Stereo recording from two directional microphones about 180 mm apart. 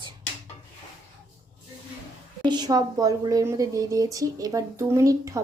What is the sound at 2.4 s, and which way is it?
Speech, 25° right (ahead or behind).